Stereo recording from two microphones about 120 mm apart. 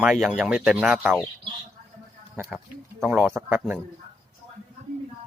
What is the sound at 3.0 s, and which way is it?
Speech, 15° right (ahead or behind).